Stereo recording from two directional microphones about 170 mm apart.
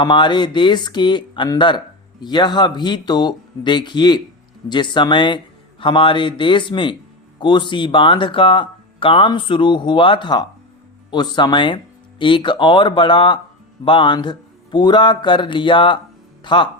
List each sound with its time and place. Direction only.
0.0 s speech: 25° left (ahead or behind)